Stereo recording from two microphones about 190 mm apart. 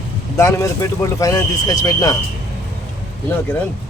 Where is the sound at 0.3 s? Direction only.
15° left (ahead or behind).